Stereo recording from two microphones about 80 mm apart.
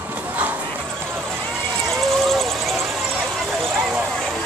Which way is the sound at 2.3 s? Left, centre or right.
Centre.